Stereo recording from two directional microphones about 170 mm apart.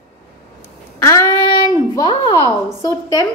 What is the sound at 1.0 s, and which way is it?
Child singing, 15° left (ahead or behind).